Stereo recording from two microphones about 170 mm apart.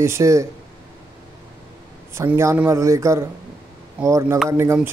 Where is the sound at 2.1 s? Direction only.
15° right (ahead or behind).